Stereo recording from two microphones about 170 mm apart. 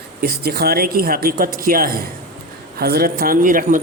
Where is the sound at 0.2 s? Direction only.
65° right (ahead or behind).